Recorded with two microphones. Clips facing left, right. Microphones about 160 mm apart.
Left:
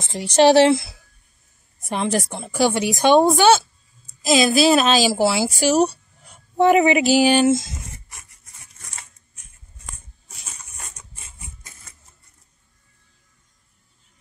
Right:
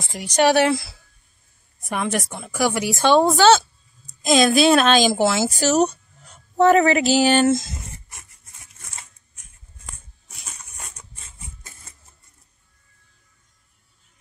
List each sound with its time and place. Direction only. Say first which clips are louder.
0.0 s a woman's voice: left 4 dB; 25° left (ahead or behind); by 7.6 s 10° left (ahead or behind)